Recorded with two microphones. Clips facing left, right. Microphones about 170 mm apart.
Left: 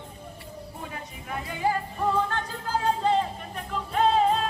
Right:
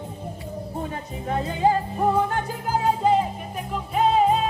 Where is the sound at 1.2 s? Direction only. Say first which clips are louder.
Right 7 dB; 30° right (ahead or behind).